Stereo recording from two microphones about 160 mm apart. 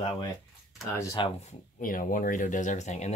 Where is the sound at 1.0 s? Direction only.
20° left (ahead or behind).